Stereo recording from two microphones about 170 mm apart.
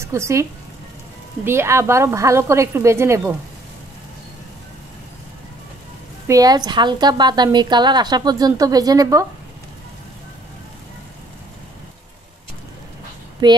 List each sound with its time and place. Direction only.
0.0 s a woman's voice: 15° right (ahead or behind)
6.2 s a woman's voice: 20° right (ahead or behind)
13.4 s a woman's voice: 25° right (ahead or behind)